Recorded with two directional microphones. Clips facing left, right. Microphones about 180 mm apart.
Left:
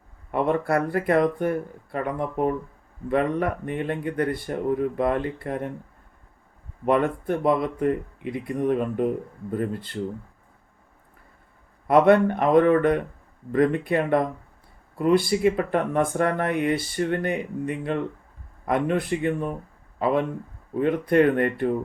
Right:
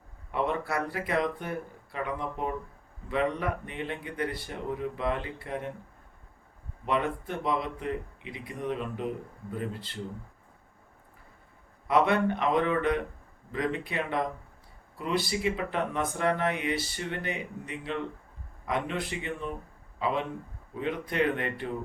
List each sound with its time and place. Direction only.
0.3 s speech: 50° left (ahead or behind)
6.8 s speech: 50° left (ahead or behind)
11.9 s speech: 55° left (ahead or behind)